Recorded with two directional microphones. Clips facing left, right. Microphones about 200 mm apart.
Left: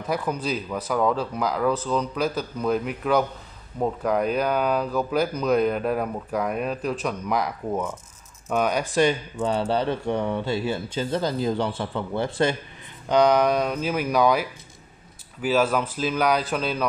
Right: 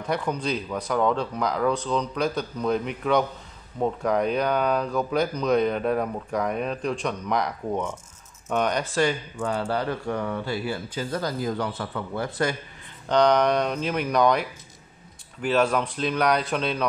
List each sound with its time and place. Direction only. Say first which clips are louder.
0.0 s speech: even; 5° left (ahead or behind)
8.9 s speech: left 3 dB; 20° left (ahead or behind)
13.1 s speech: left 1 dB; 5° left (ahead or behind)